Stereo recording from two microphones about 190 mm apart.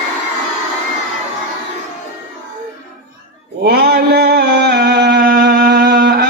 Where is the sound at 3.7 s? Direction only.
55° right (ahead or behind).